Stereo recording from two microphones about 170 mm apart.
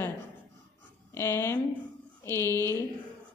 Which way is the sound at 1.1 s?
15° left (ahead or behind).